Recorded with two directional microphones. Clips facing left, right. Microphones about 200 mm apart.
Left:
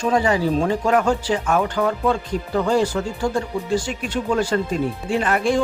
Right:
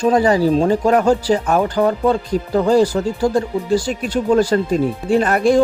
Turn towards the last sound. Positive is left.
turn(degrees=-40)  # may be behind; listen again after turning